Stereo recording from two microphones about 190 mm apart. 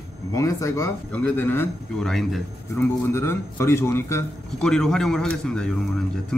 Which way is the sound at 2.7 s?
15° left (ahead or behind).